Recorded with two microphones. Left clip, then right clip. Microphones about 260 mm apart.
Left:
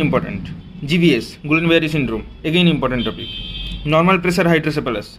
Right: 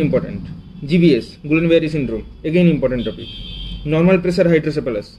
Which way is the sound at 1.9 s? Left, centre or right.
Centre.